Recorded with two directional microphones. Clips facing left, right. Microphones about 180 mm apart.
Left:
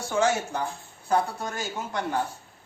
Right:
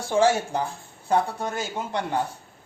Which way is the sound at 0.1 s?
30° right (ahead or behind).